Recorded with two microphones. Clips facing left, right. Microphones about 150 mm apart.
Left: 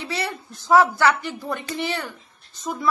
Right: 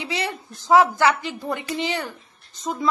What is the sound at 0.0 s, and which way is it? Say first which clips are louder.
A woman's voice: right 1 dB; 15° right (ahead or behind).